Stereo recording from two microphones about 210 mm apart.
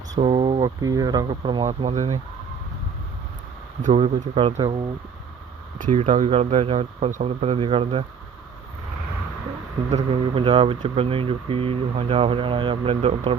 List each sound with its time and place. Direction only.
0.2 s speech: 30° right (ahead or behind)
0.6 s speech: 15° right (ahead or behind)
3.8 s speech: 30° right (ahead or behind)
5.8 s speech: 35° right (ahead or behind)
9.9 s speech: 25° right (ahead or behind)